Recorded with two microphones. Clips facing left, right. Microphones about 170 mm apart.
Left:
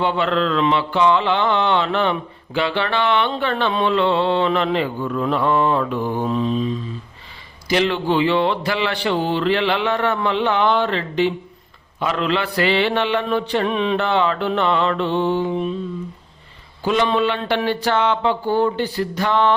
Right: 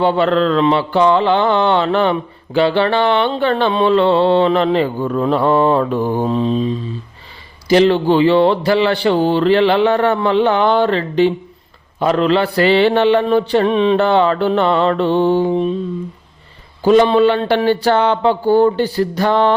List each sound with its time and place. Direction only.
0.0 s mantra: 35° right (ahead or behind)
16.8 s mantra: 40° right (ahead or behind)